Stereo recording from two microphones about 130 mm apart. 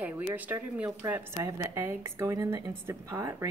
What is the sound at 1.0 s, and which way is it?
A woman's voice, 20° right (ahead or behind).